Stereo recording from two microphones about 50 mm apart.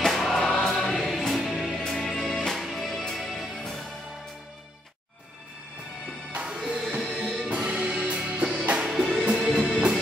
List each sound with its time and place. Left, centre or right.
0.0 s choir: centre
1.2 s music: centre
1.9 s music: centre
6.5 s music: centre
8.8 s music: centre